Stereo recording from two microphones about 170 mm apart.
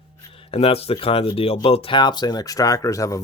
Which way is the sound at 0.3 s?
35° left (ahead or behind).